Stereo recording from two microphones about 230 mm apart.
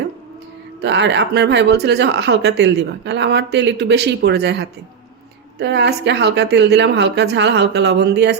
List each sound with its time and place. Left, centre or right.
0.8 s speech: right